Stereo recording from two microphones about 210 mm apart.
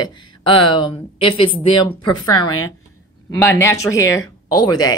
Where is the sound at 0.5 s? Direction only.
25° left (ahead or behind).